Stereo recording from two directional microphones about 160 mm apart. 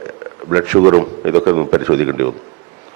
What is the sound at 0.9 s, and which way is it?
A man's voice, 30° right (ahead or behind).